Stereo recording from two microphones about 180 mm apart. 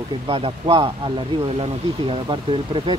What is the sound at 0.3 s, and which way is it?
Speech, 30° right (ahead or behind).